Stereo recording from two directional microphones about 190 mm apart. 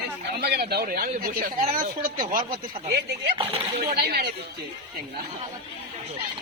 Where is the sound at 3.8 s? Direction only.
55° right (ahead or behind).